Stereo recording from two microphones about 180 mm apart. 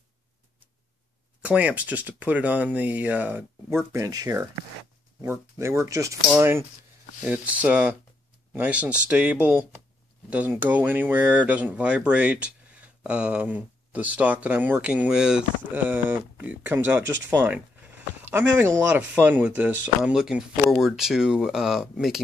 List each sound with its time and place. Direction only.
1.4 s speech: 5° right (ahead or behind)